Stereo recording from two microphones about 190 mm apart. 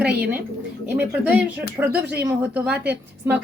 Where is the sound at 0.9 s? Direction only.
5° right (ahead or behind).